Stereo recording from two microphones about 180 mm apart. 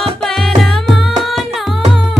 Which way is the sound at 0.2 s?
Centre (ahead or behind).